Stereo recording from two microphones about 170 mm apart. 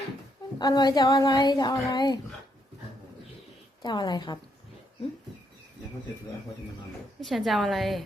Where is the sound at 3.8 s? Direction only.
25° left (ahead or behind).